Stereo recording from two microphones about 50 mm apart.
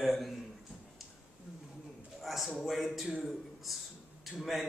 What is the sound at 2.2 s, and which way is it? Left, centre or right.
A man's voice, centre.